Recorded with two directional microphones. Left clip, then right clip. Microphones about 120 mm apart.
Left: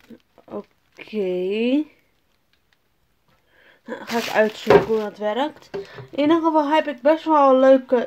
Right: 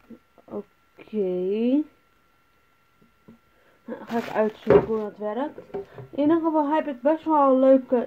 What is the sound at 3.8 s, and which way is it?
Speech, 20° left (ahead or behind).